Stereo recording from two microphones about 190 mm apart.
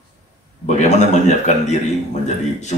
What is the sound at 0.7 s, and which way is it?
Speech, 35° left (ahead or behind).